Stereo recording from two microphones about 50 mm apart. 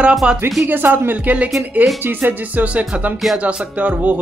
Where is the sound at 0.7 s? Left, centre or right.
Right.